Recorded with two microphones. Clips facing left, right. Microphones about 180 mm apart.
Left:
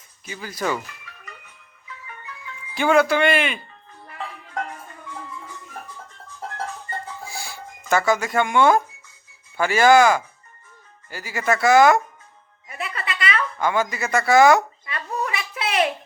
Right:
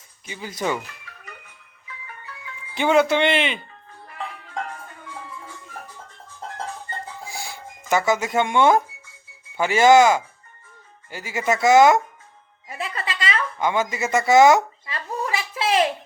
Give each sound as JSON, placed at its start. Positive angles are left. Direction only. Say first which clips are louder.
{"t": 0.3, "sound": "speech", "louder": "even", "side_deg": -20}
{"t": 2.7, "sound": "speech", "louder": "even", "side_deg": -20}
{"t": 7.3, "sound": "music", "louder": "even", "side_deg": -20}
{"t": 9.6, "sound": "speech", "louder": "right 1 dB", "side_deg": -20}
{"t": 12.6, "sound": "a sound", "louder": "right 1 dB", "side_deg": -30}